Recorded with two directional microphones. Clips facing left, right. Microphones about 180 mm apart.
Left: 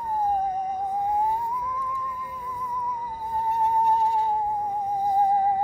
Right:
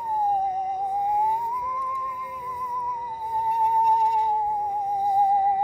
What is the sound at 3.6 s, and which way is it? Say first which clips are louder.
Music: even; 15° right (ahead or behind).